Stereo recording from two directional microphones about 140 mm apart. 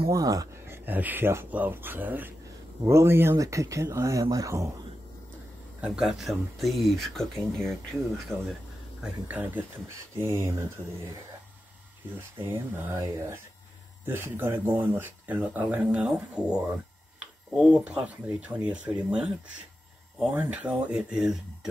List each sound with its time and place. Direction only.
0.1 s speech: 25° right (ahead or behind)
0.8 s speech: 15° right (ahead or behind)
5.8 s speech: 5° right (ahead or behind)
9.0 s speech: 10° right (ahead or behind)
12.4 s speech: 15° right (ahead or behind)